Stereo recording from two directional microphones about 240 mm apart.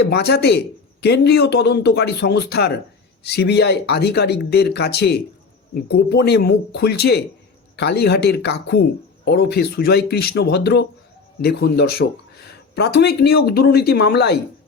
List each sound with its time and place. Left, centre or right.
0.1 s speech: left